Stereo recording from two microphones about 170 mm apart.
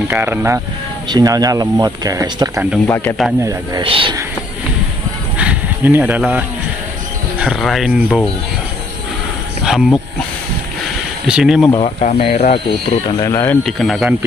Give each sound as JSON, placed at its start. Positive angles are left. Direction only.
{"t": 0.1, "sound": "speech", "side_deg": -10}
{"t": 2.9, "sound": "speech", "side_deg": 10}
{"t": 3.8, "sound": "a man's voice", "side_deg": -30}
{"t": 5.4, "sound": "a sound", "side_deg": -10}
{"t": 7.3, "sound": "speech", "side_deg": 0}
{"t": 9.7, "sound": "speech", "side_deg": 0}
{"t": 11.2, "sound": "speech", "side_deg": -5}
{"t": 12.0, "sound": "speech", "side_deg": 40}
{"t": 13.2, "sound": "speech", "side_deg": 15}
{"t": 13.7, "sound": "speech", "side_deg": 0}